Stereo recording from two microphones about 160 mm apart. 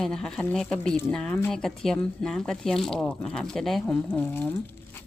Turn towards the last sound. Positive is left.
turn(degrees=10)  # may be behind; listen again after turning